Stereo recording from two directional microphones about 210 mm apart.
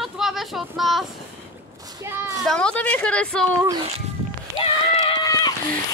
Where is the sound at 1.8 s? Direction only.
15° right (ahead or behind).